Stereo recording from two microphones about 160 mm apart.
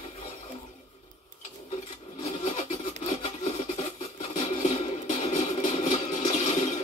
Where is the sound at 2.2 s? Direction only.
45° left (ahead or behind).